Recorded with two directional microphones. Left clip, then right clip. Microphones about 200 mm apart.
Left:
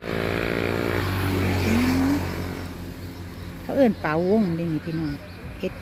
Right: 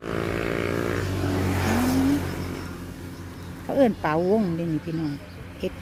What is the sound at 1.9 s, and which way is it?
Vehicle, 55° right (ahead or behind).